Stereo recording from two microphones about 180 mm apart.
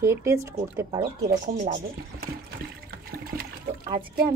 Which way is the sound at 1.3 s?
45° right (ahead or behind).